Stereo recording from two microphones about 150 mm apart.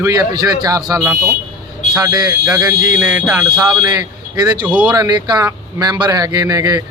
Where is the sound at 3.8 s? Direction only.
25° right (ahead or behind).